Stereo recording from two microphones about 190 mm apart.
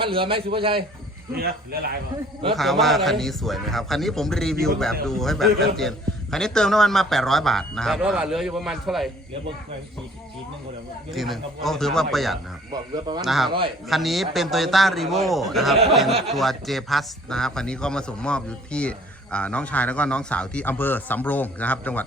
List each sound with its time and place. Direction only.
0.0 s a man's voice: 30° right (ahead or behind)
1.4 s speech: 55° right (ahead or behind)
2.6 s a man's voice: centre (ahead or behind)
11.1 s a man's voice: centre (ahead or behind)
12.7 s a man's voice: 20° right (ahead or behind)
13.2 s a man's voice: centre (ahead or behind)